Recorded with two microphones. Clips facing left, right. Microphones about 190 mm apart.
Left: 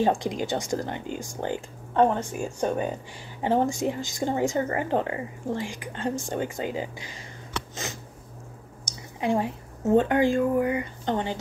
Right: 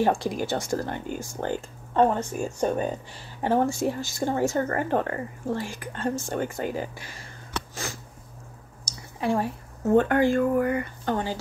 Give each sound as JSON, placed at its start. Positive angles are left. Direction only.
{"t": 0.0, "sound": "speech", "side_deg": 15}
{"t": 7.7, "sound": "a sound", "side_deg": 20}
{"t": 8.8, "sound": "speech", "side_deg": 15}